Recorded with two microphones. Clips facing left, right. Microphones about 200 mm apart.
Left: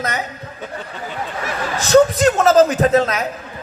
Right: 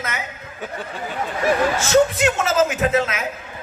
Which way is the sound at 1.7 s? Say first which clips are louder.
Left 4 dB; 35° left (ahead or behind).